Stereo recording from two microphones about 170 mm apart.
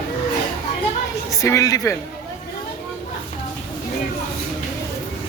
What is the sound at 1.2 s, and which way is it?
Speech, 20° left (ahead or behind).